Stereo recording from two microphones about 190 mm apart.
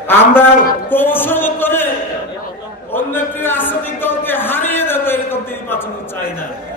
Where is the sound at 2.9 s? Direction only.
10° left (ahead or behind).